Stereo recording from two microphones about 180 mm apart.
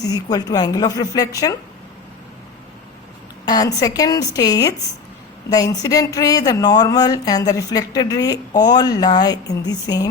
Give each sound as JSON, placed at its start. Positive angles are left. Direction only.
{"t": 0.1, "sound": "speech", "side_deg": 20}
{"t": 3.4, "sound": "speech", "side_deg": 20}